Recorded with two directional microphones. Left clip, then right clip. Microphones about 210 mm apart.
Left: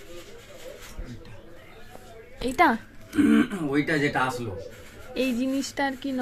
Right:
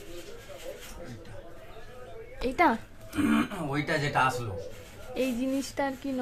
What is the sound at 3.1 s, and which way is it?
Speech, 10° right (ahead or behind).